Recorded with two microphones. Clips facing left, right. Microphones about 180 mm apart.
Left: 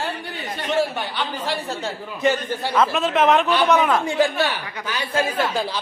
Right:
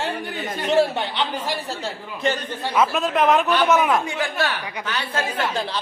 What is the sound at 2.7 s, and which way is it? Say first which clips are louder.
A man's voice: even; 5° right (ahead or behind).